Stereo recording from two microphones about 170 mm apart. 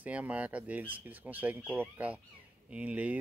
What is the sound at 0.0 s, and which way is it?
Speech, 10° right (ahead or behind).